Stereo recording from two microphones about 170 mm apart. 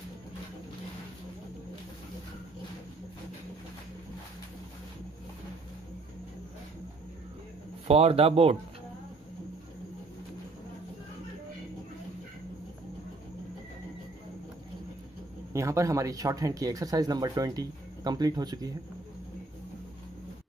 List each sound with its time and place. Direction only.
7.9 s speech: 35° right (ahead or behind)
15.5 s speech: 15° right (ahead or behind)